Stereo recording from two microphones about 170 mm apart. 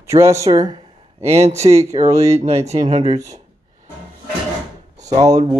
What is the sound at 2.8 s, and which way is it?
Speech, 25° right (ahead or behind).